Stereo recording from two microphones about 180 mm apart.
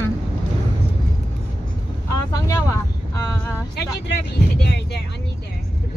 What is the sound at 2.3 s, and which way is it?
Vehicle, 15° left (ahead or behind).